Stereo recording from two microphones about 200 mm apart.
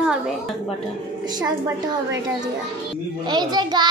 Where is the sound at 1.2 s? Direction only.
20° right (ahead or behind).